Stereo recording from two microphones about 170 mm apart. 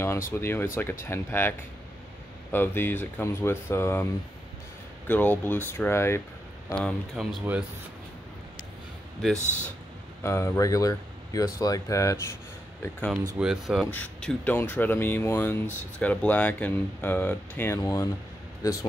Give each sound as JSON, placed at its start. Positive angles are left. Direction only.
{"t": 0.3, "sound": "speech", "side_deg": 15}
{"t": 2.5, "sound": "speech", "side_deg": 10}
{"t": 9.4, "sound": "speech", "side_deg": 45}
{"t": 10.2, "sound": "speech", "side_deg": 15}
{"t": 13.4, "sound": "speech", "side_deg": -5}
{"t": 13.9, "sound": "speech", "side_deg": 10}